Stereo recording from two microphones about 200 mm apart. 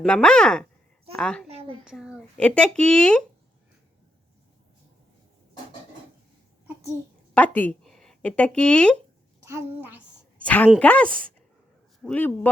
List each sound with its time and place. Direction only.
0.0 s speech: 5° left (ahead or behind)
1.5 s a woman's voice: 30° right (ahead or behind)
1.8 s speech: 5° right (ahead or behind)
7.3 s speech: 10° left (ahead or behind)
9.4 s a child's voice: 15° right (ahead or behind)
10.3 s a sound: 5° left (ahead or behind)
10.8 s speech: 5° left (ahead or behind)